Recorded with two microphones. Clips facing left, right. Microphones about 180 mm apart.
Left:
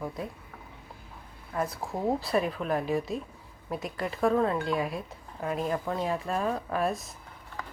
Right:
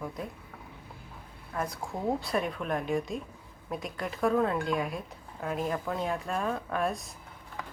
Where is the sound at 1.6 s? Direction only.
Centre (ahead or behind).